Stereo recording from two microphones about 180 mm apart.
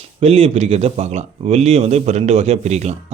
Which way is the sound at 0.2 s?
35° right (ahead or behind).